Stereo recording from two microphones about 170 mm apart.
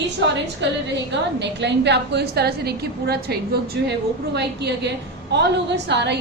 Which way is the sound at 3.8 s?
90° right.